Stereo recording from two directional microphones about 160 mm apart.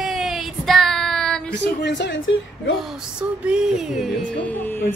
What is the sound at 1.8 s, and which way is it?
Speech, 90° left.